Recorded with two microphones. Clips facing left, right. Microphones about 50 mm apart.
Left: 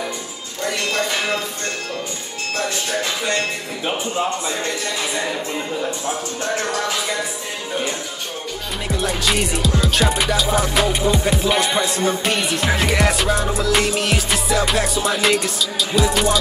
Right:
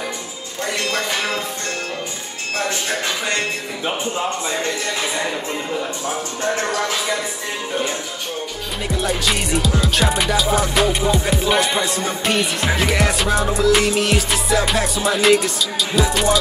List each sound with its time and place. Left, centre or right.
8.8 s music: centre